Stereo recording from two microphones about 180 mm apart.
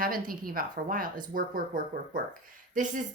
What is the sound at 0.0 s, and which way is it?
A woman's voice, 50° right (ahead or behind).